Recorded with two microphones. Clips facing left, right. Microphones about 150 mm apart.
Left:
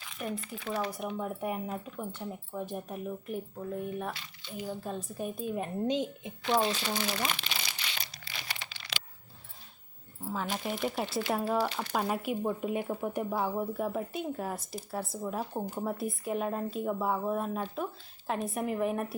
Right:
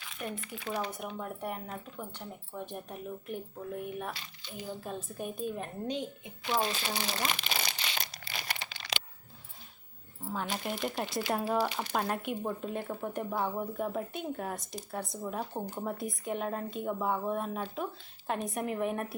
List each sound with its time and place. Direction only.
0.1 s speech: centre (ahead or behind)
5.5 s speech: 20° left (ahead or behind)
7.2 s speech: 45° right (ahead or behind)
8.1 s crumpling: 50° right (ahead or behind)
10.3 s speech: centre (ahead or behind)
11.5 s speech: 10° right (ahead or behind)
11.9 s speech: 5° left (ahead or behind)